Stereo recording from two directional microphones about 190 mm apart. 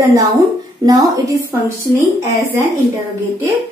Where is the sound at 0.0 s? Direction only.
20° right (ahead or behind).